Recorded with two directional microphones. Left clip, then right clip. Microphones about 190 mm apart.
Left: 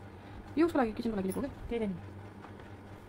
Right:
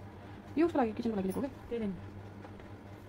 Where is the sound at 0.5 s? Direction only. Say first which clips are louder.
Left 1 dB; centre (ahead or behind).